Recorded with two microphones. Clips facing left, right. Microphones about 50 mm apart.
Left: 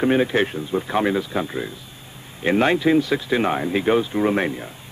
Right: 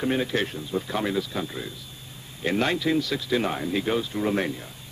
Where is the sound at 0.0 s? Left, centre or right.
Left.